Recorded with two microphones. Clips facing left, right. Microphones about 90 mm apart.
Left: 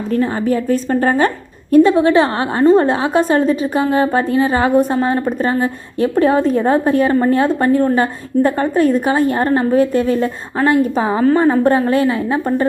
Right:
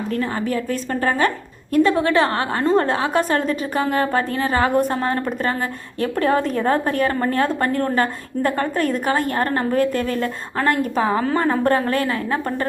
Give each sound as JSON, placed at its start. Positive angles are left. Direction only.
{"t": 0.2, "sound": "a woman's voice", "side_deg": 25}